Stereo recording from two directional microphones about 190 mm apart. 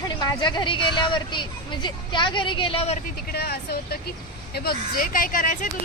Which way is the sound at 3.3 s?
55° left (ahead or behind).